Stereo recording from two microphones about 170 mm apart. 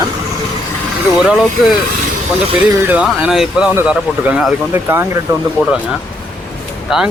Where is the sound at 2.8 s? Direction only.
10° right (ahead or behind).